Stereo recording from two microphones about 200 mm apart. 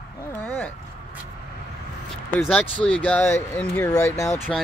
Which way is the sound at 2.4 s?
10° left (ahead or behind).